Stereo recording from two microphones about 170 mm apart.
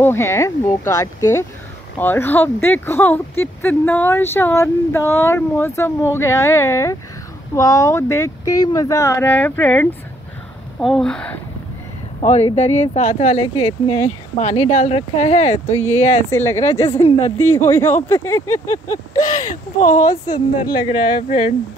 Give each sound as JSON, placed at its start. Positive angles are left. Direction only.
{"t": 0.0, "sound": "speech", "side_deg": 15}
{"t": 12.2, "sound": "speech", "side_deg": 40}
{"t": 16.3, "sound": "speech", "side_deg": 15}
{"t": 19.1, "sound": "speech", "side_deg": 45}
{"t": 20.1, "sound": "a woman's voice", "side_deg": 25}
{"t": 21.3, "sound": "speech", "side_deg": 40}